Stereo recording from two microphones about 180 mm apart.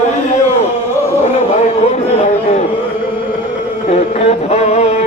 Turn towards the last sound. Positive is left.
turn(degrees=35)  # may be behind; listen again after turning